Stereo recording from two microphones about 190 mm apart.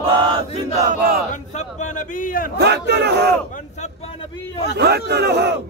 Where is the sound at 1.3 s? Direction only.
35° left (ahead or behind).